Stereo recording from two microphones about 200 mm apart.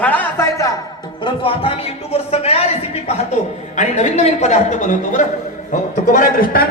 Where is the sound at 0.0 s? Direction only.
10° left (ahead or behind).